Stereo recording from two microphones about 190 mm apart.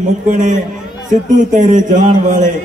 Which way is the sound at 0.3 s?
40° right (ahead or behind).